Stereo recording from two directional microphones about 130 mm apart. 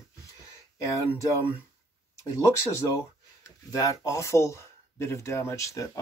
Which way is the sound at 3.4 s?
25° left (ahead or behind).